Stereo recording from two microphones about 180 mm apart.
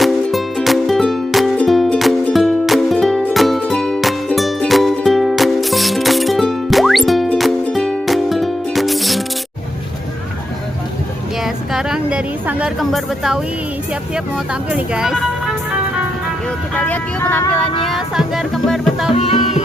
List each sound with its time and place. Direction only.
0.0 s music: centre (ahead or behind)
11.4 s a sound: centre (ahead or behind)
14.3 s speech: 5° right (ahead or behind)
16.7 s speech: 10° left (ahead or behind)
17.9 s music: centre (ahead or behind)
19.1 s music: 35° left (ahead or behind)